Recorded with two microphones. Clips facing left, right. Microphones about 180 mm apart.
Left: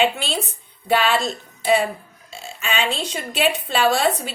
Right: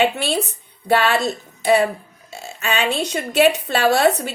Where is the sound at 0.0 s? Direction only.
55° right (ahead or behind).